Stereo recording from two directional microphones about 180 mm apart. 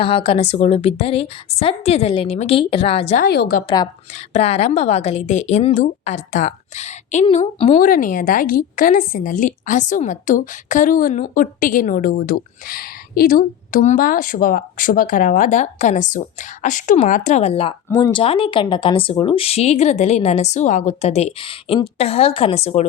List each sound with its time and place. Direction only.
0.0 s speech: 30° left (ahead or behind)
3.2 s a woman's voice: 65° left (ahead or behind)
4.1 s a woman's voice: 35° left (ahead or behind)